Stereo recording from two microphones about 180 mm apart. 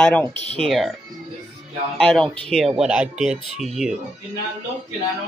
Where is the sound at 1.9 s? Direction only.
Centre (ahead or behind).